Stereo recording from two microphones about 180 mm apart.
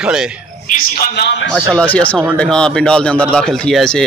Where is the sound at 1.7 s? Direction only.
5° left (ahead or behind).